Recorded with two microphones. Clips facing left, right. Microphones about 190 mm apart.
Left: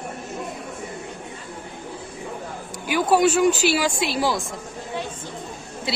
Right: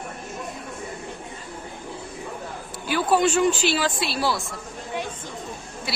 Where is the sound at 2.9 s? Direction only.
10° left (ahead or behind).